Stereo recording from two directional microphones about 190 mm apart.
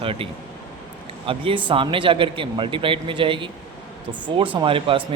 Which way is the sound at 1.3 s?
25° right (ahead or behind).